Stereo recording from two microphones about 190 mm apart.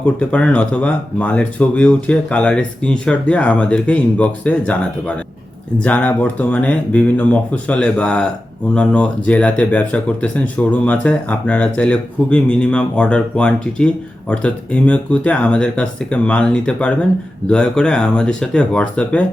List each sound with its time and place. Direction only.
0.0 s speech: 10° left (ahead or behind)